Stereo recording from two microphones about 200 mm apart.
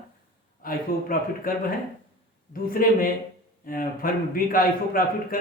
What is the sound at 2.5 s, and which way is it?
A man's voice, 45° left (ahead or behind).